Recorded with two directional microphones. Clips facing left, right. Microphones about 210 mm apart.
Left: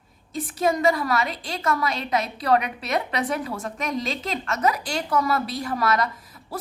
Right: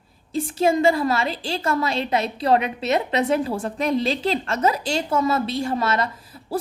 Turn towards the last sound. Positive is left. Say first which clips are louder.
# right 1 dB
turn(degrees=-25)  # may be behind; listen again after turning